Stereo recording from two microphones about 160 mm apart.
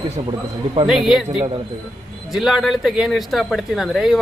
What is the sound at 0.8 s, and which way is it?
A man's voice, 5° right (ahead or behind).